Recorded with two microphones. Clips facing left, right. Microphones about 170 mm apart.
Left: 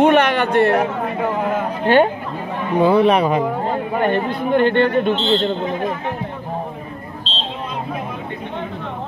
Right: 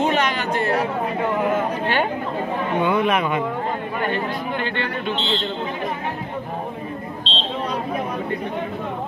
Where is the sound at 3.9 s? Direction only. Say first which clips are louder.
Left 7 dB; 50° left (ahead or behind).